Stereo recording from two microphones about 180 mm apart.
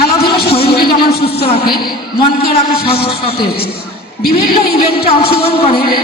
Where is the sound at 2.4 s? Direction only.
60° left (ahead or behind).